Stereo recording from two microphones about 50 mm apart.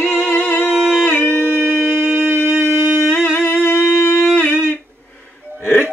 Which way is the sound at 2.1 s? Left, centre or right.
Right.